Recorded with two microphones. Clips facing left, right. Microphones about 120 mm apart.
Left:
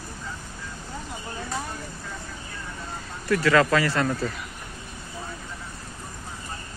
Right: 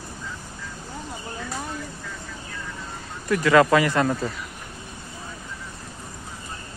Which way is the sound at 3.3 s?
20° right (ahead or behind).